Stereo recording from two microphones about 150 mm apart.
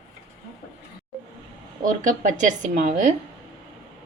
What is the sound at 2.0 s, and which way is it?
A woman's voice, 60° right (ahead or behind).